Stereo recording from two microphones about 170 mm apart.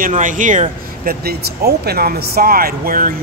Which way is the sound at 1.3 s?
70° right (ahead or behind).